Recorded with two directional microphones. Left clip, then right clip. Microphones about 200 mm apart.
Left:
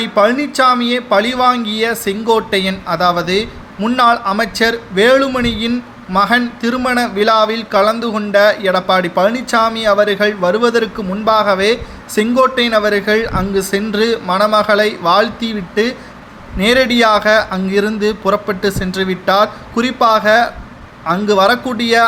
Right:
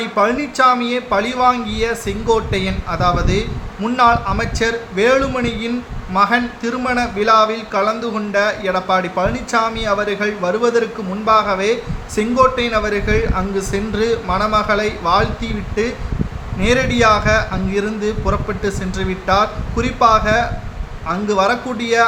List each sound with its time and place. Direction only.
0.0 s speech: 25° left (ahead or behind)